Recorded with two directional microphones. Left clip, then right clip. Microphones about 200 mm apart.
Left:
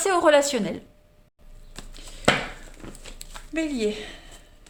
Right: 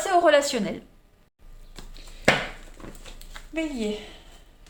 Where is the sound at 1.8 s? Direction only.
35° left (ahead or behind).